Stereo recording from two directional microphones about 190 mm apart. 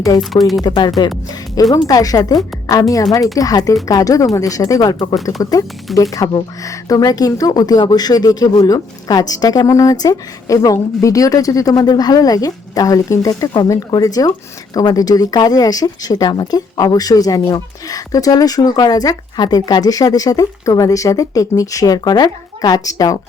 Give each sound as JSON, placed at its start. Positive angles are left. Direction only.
{"t": 0.2, "sound": "speech", "side_deg": 0}
{"t": 0.6, "sound": "a woman's voice", "side_deg": 20}